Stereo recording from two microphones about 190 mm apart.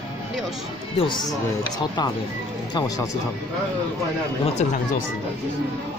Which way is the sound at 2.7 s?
20° left (ahead or behind).